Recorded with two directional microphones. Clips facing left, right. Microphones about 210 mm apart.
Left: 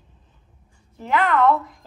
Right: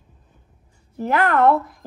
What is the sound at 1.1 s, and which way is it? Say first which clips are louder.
Speech: right 1 dB; 50° right (ahead or behind).